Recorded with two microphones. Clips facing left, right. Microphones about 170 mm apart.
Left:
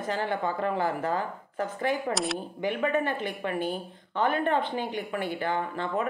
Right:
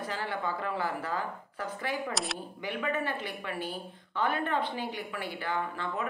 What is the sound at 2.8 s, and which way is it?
Speech, 50° left (ahead or behind).